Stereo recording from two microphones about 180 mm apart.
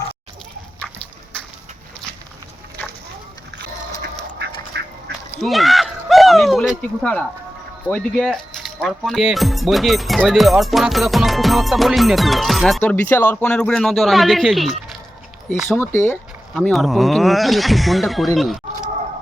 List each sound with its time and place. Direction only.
4.0 s duck: 70° right (ahead or behind)
5.4 s a sound: centre (ahead or behind)
7.9 s speech: 5° left (ahead or behind)
15.8 s speech: 15° left (ahead or behind)
16.6 s speech: 5° left (ahead or behind)